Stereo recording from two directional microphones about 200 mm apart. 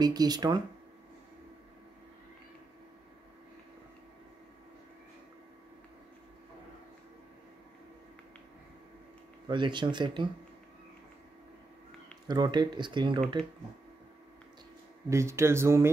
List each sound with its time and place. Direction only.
0.0 s speech: 20° right (ahead or behind)
9.5 s speech: 25° right (ahead or behind)
12.3 s speech: 20° right (ahead or behind)
15.0 s speech: 15° right (ahead or behind)